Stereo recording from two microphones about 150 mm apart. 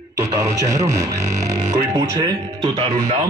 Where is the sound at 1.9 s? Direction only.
35° right (ahead or behind).